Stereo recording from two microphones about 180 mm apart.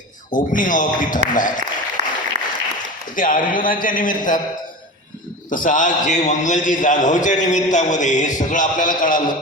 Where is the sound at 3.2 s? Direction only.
50° left (ahead or behind).